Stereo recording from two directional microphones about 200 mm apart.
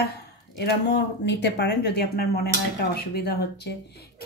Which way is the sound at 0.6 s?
60° left (ahead or behind).